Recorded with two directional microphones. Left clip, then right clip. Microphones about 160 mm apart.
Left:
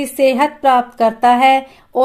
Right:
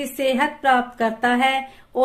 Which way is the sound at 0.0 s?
40° left (ahead or behind).